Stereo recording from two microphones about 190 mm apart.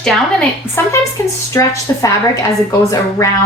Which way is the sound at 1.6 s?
20° left (ahead or behind).